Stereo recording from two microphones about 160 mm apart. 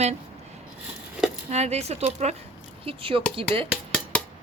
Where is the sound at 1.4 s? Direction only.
45° right (ahead or behind).